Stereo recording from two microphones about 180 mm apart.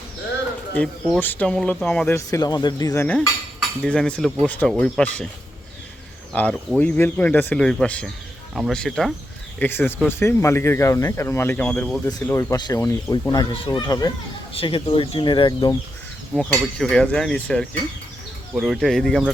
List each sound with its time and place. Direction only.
0.8 s speech: 10° left (ahead or behind)
6.3 s speech: 5° left (ahead or behind); by 15.7 s 25° left (ahead or behind)
16.3 s speech: 5° left (ahead or behind)